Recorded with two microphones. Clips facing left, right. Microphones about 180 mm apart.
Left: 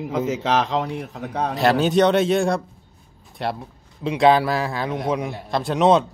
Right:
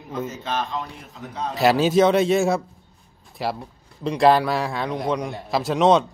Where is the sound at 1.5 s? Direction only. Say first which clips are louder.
Right 1 dB; 5° right (ahead or behind).